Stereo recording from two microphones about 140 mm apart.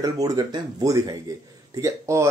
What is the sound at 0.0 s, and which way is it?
Speech, 25° right (ahead or behind).